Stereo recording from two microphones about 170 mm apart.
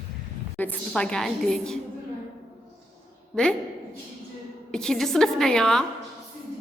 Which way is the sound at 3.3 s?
5° left (ahead or behind).